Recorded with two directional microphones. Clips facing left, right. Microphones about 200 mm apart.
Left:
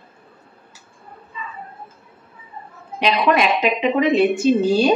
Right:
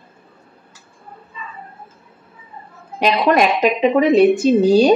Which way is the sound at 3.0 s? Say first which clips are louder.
Right 3 dB; 45° right (ahead or behind).